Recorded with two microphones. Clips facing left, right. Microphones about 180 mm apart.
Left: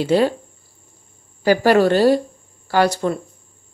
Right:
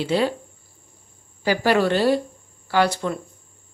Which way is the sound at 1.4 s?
45° left (ahead or behind).